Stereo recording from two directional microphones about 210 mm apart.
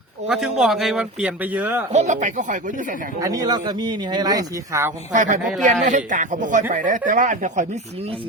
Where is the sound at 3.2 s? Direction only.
20° right (ahead or behind).